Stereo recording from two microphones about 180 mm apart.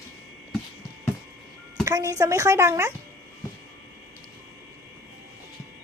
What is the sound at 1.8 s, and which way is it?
A woman's voice, 15° right (ahead or behind).